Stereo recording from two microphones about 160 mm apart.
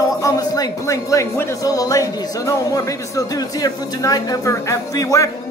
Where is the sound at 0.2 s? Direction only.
20° left (ahead or behind).